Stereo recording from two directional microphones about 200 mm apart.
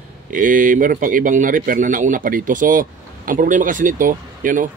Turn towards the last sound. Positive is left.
turn(degrees=-40)  # may be behind; listen again after turning